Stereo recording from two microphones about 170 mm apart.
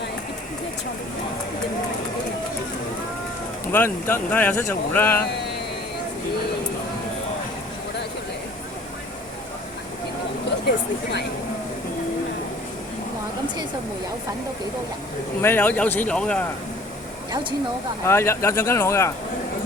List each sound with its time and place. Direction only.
3.7 s speech: 10° left (ahead or behind)
15.4 s speech: 10° left (ahead or behind)
18.0 s speech: 15° left (ahead or behind)